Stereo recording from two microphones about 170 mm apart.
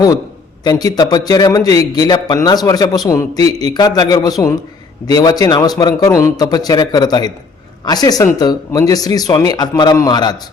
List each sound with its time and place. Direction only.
0.6 s a man's voice: 20° left (ahead or behind)